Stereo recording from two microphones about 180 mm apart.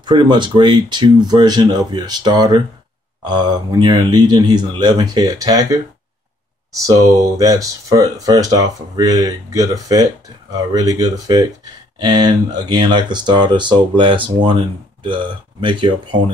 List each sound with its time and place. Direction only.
0.0 s speech: 25° right (ahead or behind)
7.0 s speech: 20° right (ahead or behind)